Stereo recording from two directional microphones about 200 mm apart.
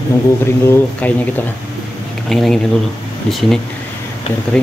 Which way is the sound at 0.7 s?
10° left (ahead or behind).